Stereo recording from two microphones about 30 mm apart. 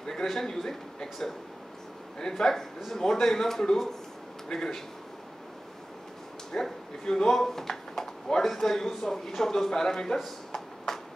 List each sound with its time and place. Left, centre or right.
0.0 s a man's voice: centre
4.5 s speech: left
6.5 s speech: left
10.1 s drawer open or close: centre